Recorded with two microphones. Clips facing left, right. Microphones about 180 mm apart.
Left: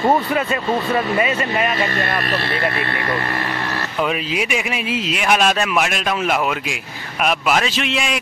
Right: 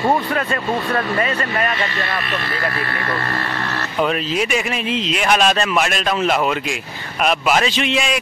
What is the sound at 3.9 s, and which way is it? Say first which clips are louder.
Speech: right 2 dB; 5° left (ahead or behind).